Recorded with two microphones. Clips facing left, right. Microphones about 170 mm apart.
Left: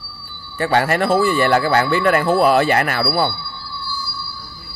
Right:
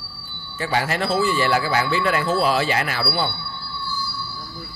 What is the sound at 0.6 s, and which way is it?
Speech, 60° left (ahead or behind).